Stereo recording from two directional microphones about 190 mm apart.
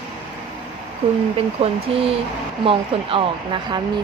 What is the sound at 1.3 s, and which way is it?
Speech, 30° right (ahead or behind).